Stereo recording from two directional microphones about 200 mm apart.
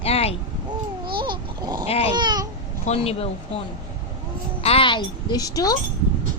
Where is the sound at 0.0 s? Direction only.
30° left (ahead or behind).